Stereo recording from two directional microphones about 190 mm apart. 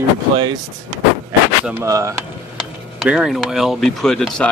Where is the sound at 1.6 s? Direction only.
15° right (ahead or behind).